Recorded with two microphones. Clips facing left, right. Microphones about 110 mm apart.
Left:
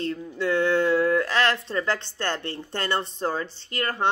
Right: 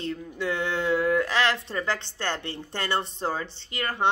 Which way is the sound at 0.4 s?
20° right (ahead or behind).